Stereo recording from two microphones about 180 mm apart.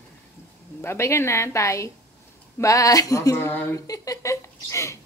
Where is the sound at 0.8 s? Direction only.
15° left (ahead or behind).